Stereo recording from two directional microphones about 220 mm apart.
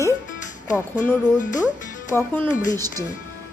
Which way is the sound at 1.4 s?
35° left (ahead or behind).